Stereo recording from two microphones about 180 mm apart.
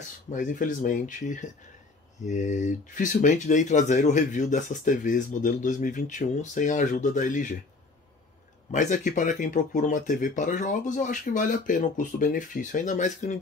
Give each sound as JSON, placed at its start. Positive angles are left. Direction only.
{"t": 0.3, "sound": "speech", "side_deg": 45}
{"t": 8.7, "sound": "speech", "side_deg": 45}